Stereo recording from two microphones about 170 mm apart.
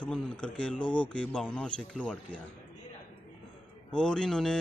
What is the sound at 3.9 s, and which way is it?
Speech, 5° left (ahead or behind).